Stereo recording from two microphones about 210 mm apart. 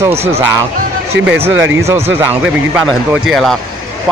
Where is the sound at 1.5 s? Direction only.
65° right (ahead or behind).